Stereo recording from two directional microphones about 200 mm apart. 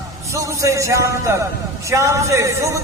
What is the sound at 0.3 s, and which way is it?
Speech, 15° right (ahead or behind).